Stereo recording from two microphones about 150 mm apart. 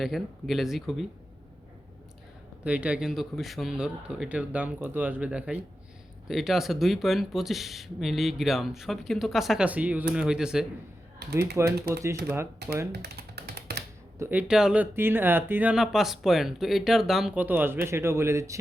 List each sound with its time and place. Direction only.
0.0 s speech: centre (ahead or behind)
2.6 s a man's voice: 10° right (ahead or behind)
11.5 s a man's voice: 20° right (ahead or behind)
12.9 s computer keyboard: 90° right
14.2 s a man's voice: 10° right (ahead or behind)